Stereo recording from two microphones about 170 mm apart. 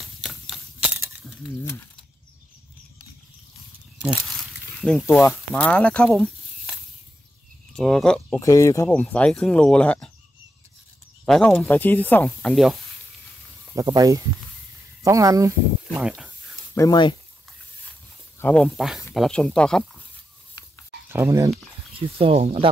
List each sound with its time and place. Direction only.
0.0 s a sound: centre (ahead or behind)
1.6 s speech: 15° left (ahead or behind)
4.6 s a sound: 5° left (ahead or behind)
5.0 s speech: 10° left (ahead or behind)
8.4 s speech: 20° left (ahead or behind)
9.0 s speech: 5° left (ahead or behind)
11.2 s speech: 5° left (ahead or behind)
13.7 s speech: 20° right (ahead or behind)
15.9 s speech: 5° right (ahead or behind)
16.7 s speech: 20° left (ahead or behind)
18.4 s speech: 5° left (ahead or behind)
21.1 s speech: 15° right (ahead or behind)
21.9 s speech: 35° right (ahead or behind)